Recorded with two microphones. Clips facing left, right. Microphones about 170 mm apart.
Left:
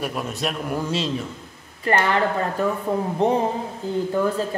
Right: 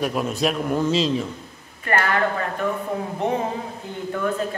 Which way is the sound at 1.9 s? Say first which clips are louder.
Left 2 dB; 30° left (ahead or behind).